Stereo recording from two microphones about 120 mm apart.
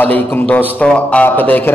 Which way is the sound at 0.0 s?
15° left (ahead or behind).